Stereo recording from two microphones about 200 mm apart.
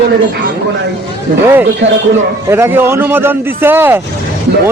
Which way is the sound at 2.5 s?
10° right (ahead or behind).